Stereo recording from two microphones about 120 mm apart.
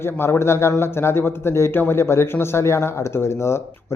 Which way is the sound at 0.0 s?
20° left (ahead or behind).